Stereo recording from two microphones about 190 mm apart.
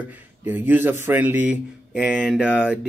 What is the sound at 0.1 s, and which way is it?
Speech, 10° right (ahead or behind).